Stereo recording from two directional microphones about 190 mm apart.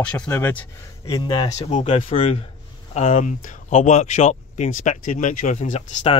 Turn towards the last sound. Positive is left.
turn(degrees=35)  # may be behind; listen again after turning